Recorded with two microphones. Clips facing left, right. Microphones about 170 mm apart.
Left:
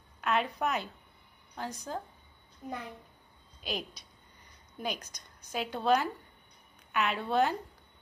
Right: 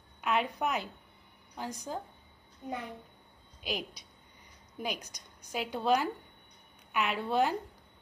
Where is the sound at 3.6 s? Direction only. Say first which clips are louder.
Even; 15° right (ahead or behind).